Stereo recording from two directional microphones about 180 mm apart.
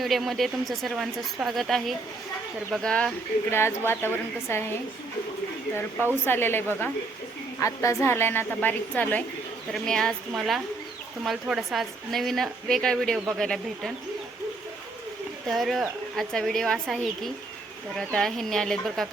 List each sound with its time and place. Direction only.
0.0 s a woman's voice: centre (ahead or behind)
6.2 s a woman's voice: 10° left (ahead or behind)
15.4 s a woman's voice: centre (ahead or behind)